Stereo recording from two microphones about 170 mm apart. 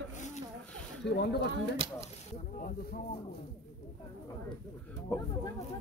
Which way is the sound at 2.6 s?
55° left (ahead or behind).